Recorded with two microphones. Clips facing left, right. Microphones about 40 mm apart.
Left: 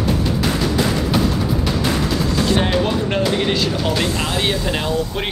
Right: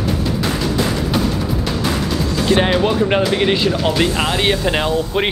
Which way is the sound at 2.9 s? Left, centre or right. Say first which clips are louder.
Right 3 dB; right.